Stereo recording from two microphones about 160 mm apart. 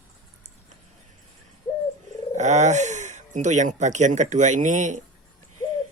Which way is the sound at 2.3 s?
45° right (ahead or behind).